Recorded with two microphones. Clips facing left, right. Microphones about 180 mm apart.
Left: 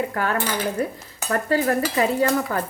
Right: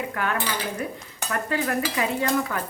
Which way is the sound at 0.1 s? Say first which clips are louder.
Left 3 dB; 40° left (ahead or behind).